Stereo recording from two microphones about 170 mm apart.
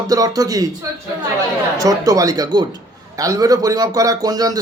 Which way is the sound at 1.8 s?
20° right (ahead or behind).